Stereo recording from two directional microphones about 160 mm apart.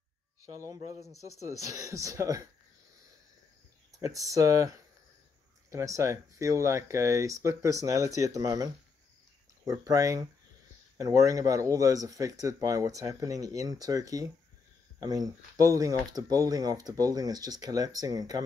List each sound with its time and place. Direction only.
0.6 s speech: 20° right (ahead or behind)
4.0 s speech: 20° right (ahead or behind)
9.7 s speech: 20° right (ahead or behind)